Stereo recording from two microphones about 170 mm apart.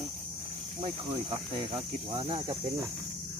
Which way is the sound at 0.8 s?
35° right (ahead or behind).